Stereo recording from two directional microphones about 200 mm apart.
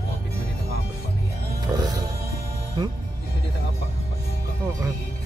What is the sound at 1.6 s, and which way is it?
Music, 20° right (ahead or behind).